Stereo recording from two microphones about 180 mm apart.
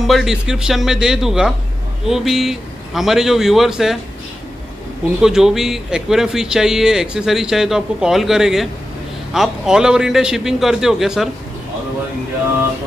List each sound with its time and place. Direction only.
0.0 s speech: centre (ahead or behind)
5.2 s speech: 5° right (ahead or behind)